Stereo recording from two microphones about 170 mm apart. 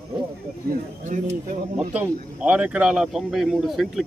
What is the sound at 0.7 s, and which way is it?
Speech, 50° right (ahead or behind).